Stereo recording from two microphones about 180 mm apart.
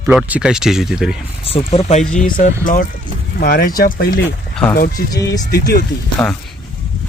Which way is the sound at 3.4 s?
60° left (ahead or behind).